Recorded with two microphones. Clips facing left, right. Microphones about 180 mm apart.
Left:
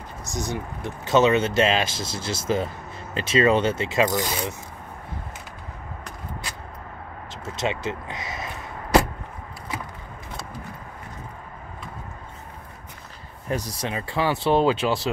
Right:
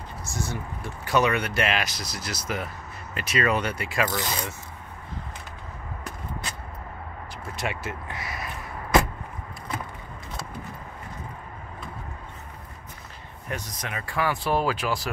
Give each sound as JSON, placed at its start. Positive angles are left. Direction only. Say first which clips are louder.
{"t": 0.2, "sound": "speech", "louder": "left 4 dB", "side_deg": 15}
{"t": 7.4, "sound": "speech", "louder": "left 5 dB", "side_deg": 20}
{"t": 13.5, "sound": "speech", "louder": "left 6 dB", "side_deg": 35}